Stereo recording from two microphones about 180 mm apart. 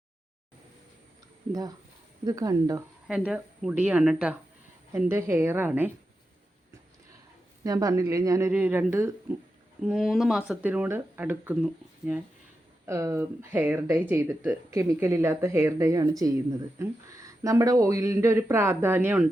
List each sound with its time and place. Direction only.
2.2 s speech: 20° right (ahead or behind)
3.1 s a woman's voice: 5° right (ahead or behind)
7.6 s speech: 20° right (ahead or behind)